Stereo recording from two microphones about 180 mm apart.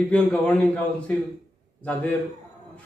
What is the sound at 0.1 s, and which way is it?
Speech, 5° left (ahead or behind).